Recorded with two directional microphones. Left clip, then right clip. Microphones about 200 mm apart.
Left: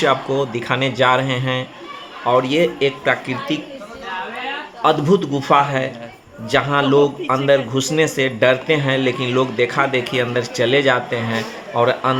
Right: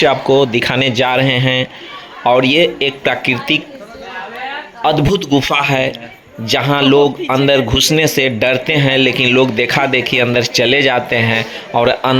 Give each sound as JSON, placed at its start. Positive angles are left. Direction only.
{"t": 0.0, "sound": "speech", "side_deg": -25}
{"t": 4.8, "sound": "speech", "side_deg": -25}